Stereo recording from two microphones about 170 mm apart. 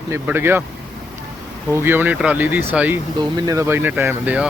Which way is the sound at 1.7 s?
15° right (ahead or behind).